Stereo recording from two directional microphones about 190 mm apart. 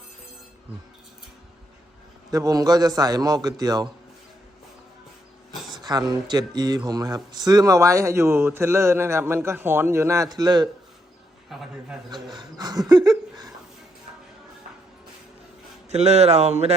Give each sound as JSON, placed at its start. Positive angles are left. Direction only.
{"t": 2.3, "sound": "a man's voice", "side_deg": -20}
{"t": 5.7, "sound": "speech", "side_deg": -20}
{"t": 11.4, "sound": "a man's voice", "side_deg": 0}
{"t": 12.1, "sound": "speech", "side_deg": -20}
{"t": 15.9, "sound": "speech", "side_deg": -35}